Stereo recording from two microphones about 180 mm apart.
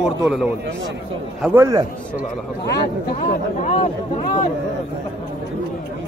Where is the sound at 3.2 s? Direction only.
40° left (ahead or behind).